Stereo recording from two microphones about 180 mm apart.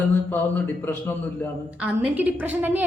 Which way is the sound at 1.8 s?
5° right (ahead or behind).